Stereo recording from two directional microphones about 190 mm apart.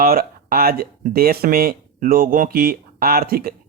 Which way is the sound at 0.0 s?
50° right (ahead or behind).